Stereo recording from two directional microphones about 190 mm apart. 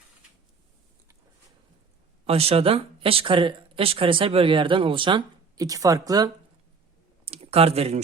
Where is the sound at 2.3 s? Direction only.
30° right (ahead or behind).